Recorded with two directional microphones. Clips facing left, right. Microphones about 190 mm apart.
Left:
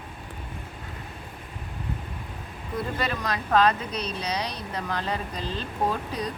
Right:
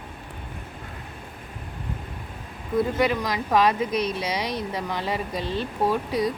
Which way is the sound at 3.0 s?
15° right (ahead or behind).